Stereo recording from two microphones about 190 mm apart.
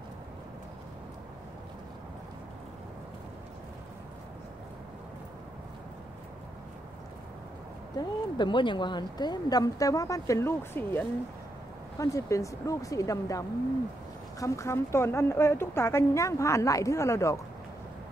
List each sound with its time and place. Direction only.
8.0 s speech: 25° left (ahead or behind)